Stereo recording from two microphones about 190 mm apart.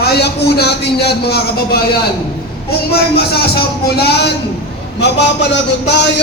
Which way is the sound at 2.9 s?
55° left (ahead or behind).